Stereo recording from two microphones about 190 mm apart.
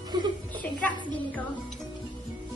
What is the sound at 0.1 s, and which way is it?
Music, 20° right (ahead or behind).